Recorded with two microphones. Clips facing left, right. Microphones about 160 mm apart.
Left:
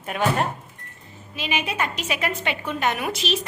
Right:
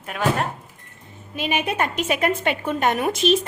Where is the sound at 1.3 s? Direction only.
50° right (ahead or behind).